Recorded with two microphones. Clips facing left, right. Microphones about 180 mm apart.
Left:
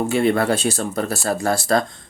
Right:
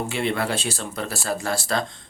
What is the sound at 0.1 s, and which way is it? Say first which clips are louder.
Speech: left 8 dB; 45° left (ahead or behind).